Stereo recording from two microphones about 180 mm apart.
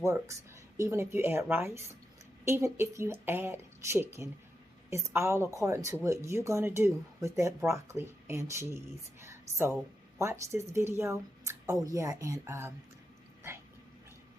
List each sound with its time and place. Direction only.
0.0 s a woman's voice: 15° right (ahead or behind)